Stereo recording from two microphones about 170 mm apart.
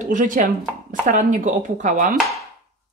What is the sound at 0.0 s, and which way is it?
Speech, 50° right (ahead or behind).